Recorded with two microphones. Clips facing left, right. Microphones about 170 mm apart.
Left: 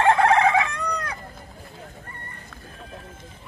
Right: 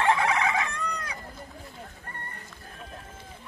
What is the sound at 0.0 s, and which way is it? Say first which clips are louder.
Chicken: left 7 dB; 55° left (ahead or behind).